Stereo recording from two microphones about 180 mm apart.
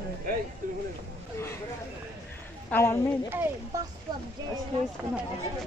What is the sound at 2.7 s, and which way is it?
Speech, 15° left (ahead or behind).